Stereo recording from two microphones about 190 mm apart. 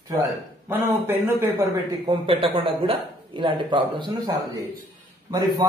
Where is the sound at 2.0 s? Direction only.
25° right (ahead or behind).